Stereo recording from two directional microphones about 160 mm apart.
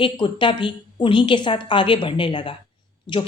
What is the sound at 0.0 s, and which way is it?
A woman's voice, 30° left (ahead or behind).